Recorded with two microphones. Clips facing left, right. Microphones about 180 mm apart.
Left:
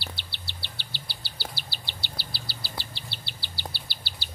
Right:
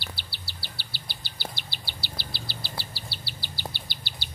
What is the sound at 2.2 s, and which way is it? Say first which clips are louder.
Insect: right 2 dB; 40° left (ahead or behind).